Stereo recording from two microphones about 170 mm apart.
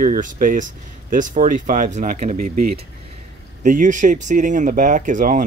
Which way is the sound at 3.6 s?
50° right (ahead or behind).